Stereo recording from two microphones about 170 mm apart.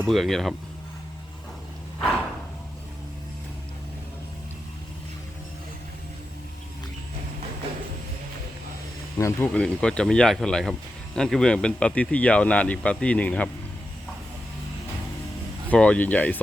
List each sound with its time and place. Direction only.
0.0 s speech: centre (ahead or behind)
9.1 s speech: 15° left (ahead or behind)
9.5 s speech: 5° left (ahead or behind)
15.7 s speech: 10° left (ahead or behind)